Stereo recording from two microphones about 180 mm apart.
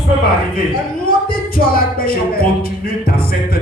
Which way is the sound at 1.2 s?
55° left (ahead or behind).